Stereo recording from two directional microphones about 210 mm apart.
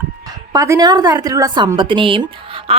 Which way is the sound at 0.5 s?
15° right (ahead or behind).